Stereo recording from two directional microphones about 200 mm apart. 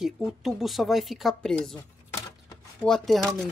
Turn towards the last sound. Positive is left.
turn(degrees=0)  # may be behind; listen again after turning